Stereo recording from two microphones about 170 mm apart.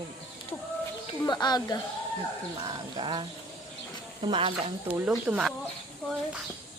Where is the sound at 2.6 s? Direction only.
25° right (ahead or behind).